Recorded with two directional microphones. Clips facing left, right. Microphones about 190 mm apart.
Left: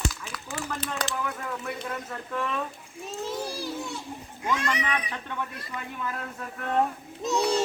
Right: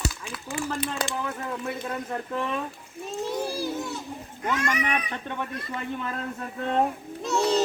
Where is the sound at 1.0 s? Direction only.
25° right (ahead or behind).